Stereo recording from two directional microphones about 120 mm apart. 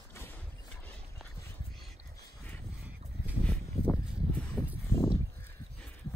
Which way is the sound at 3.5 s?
10° left (ahead or behind).